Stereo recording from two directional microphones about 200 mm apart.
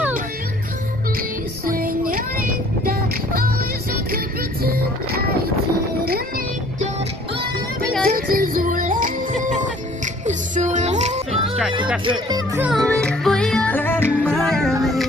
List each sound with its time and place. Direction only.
1.7 s music: 45° right (ahead or behind)
4.6 s boat: 50° right (ahead or behind)
8.0 s music: 45° right (ahead or behind)
12.0 s speech: 25° right (ahead or behind)
12.5 s music: 5° right (ahead or behind)
12.8 s music: 5° left (ahead or behind)